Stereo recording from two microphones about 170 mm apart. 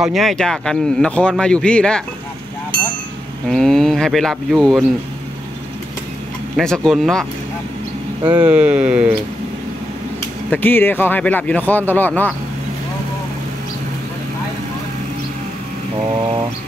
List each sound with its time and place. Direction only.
0.0 s speech: centre (ahead or behind)
3.4 s speech: centre (ahead or behind)
6.5 s speech: 5° left (ahead or behind)
8.4 s speech: 10° right (ahead or behind)
10.5 s speech: 10° left (ahead or behind)
16.0 s a sound: 30° right (ahead or behind)